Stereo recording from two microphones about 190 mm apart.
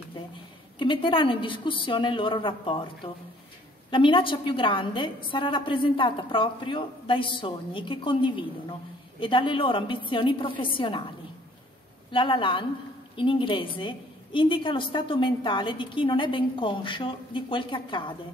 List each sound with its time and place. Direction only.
0.7 s a woman's voice: 25° left (ahead or behind)
12.1 s a woman's voice: 25° left (ahead or behind)